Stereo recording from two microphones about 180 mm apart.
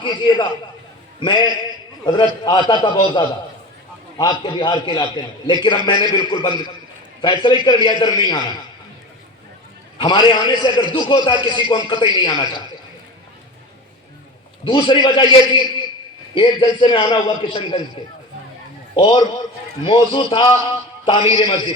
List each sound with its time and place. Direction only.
0.0 s a man's voice: 25° left (ahead or behind)
10.0 s a man's voice: 25° left (ahead or behind)
14.6 s a man's voice: 25° left (ahead or behind)
18.9 s a man's voice: 30° left (ahead or behind)